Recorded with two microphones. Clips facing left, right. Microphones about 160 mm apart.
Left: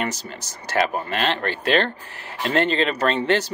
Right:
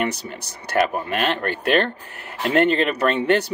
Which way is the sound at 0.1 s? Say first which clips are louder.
Right 2 dB; 60° right (ahead or behind).